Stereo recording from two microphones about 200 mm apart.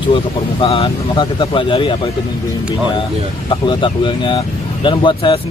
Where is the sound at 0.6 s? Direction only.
30° left (ahead or behind).